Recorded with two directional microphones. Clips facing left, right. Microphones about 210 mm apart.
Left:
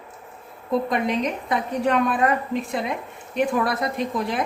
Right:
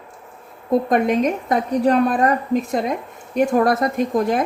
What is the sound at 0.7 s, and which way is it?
A woman's voice, 50° right (ahead or behind).